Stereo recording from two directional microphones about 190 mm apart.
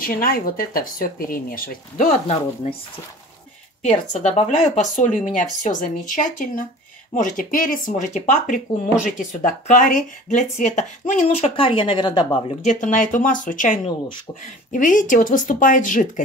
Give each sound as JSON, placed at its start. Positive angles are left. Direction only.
{"t": 0.0, "sound": "speech", "side_deg": 50}
{"t": 4.1, "sound": "speech", "side_deg": 40}
{"t": 12.6, "sound": "speech", "side_deg": 45}
{"t": 13.8, "sound": "speech", "side_deg": 25}
{"t": 14.7, "sound": "speech", "side_deg": 45}